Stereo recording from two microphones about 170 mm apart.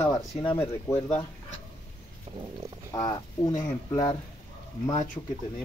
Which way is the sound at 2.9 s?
20° left (ahead or behind).